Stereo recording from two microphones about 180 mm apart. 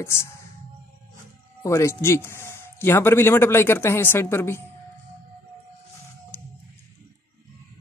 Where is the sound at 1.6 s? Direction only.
15° left (ahead or behind).